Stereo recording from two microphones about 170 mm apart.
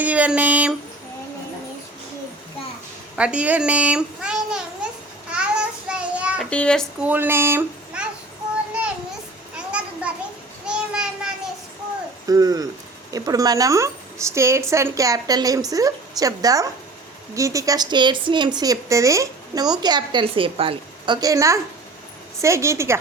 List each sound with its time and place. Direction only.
0.0 s speech: 10° right (ahead or behind)
3.2 s a child's voice: 5° right (ahead or behind)
5.3 s child singing: 5° right (ahead or behind)
6.5 s speech: 5° left (ahead or behind)
7.0 s a child's voice: 10° right (ahead or behind)
9.6 s a sound: 5° right (ahead or behind)
12.3 s a woman's voice: 20° right (ahead or behind)